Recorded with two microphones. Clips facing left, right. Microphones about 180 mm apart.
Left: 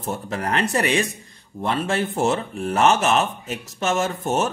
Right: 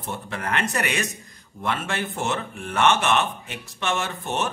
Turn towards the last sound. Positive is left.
turn(degrees=40)  # may be behind; listen again after turning